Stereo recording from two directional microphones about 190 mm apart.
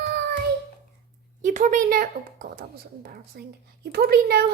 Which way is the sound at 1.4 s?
40° right (ahead or behind).